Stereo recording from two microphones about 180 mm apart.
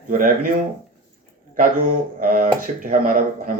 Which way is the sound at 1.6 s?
50° right (ahead or behind).